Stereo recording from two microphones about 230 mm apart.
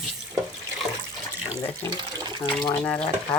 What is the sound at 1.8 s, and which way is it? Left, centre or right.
Speech, centre.